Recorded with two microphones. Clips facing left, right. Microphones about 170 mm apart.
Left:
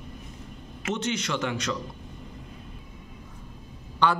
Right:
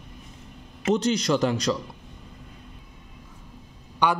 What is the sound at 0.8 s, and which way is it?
Speech, 35° right (ahead or behind).